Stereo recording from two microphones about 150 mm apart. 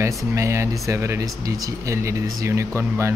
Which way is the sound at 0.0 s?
20° right (ahead or behind).